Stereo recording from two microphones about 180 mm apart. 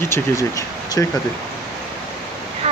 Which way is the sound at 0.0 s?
15° left (ahead or behind).